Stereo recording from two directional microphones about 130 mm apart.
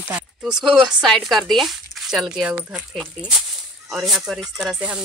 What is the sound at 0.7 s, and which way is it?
Speech, centre (ahead or behind).